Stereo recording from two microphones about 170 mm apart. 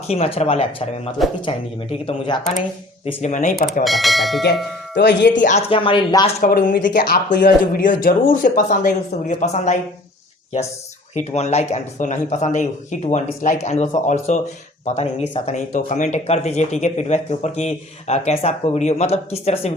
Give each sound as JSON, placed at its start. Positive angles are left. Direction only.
{"t": 0.1, "sound": "speech", "side_deg": 40}
{"t": 3.1, "sound": "speech", "side_deg": 45}
{"t": 3.8, "sound": "speech", "side_deg": 0}
{"t": 4.9, "sound": "speech", "side_deg": 90}
{"t": 5.3, "sound": "speech", "side_deg": 45}
{"t": 6.4, "sound": "speech", "side_deg": 55}
{"t": 11.1, "sound": "speech", "side_deg": 40}